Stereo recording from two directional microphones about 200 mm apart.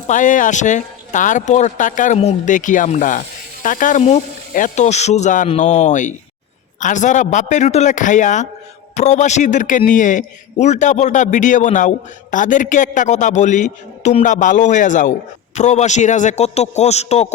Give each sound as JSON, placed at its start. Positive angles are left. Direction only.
{"t": 0.1, "sound": "a man's voice", "side_deg": 40}